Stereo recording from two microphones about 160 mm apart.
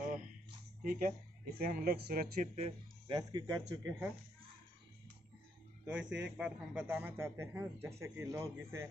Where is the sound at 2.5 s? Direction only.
40° right (ahead or behind).